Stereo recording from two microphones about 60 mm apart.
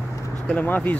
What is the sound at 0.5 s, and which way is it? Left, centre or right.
Speech, left.